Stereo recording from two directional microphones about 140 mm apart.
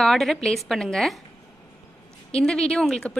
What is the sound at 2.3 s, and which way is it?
Speech, 5° left (ahead or behind).